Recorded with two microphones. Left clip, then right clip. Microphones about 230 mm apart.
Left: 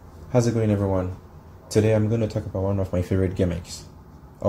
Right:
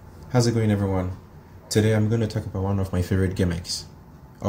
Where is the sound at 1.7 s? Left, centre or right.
Centre.